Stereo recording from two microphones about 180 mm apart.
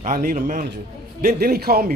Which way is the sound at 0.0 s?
45° right (ahead or behind).